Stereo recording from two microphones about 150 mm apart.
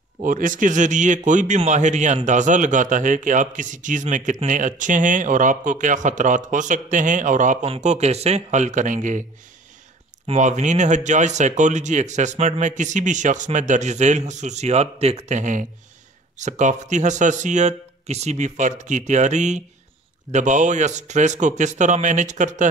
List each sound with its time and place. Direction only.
0.2 s a man's voice: 65° right (ahead or behind)
7.6 s speech: 45° right (ahead or behind)
10.2 s speech: 50° right (ahead or behind)